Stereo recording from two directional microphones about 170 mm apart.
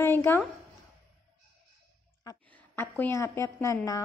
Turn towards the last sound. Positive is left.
turn(degrees=15)  # may be behind; listen again after turning